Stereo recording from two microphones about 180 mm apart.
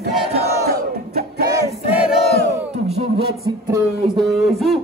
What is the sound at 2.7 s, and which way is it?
Music, 35° right (ahead or behind).